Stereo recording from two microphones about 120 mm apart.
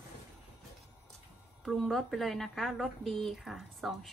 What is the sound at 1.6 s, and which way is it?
Speech, 5° left (ahead or behind).